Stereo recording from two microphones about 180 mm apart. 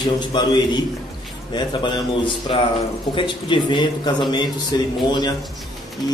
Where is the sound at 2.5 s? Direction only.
30° left (ahead or behind).